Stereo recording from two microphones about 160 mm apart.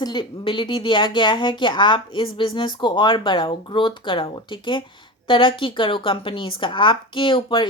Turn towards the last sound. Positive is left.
turn(degrees=30)  # may be behind; listen again after turning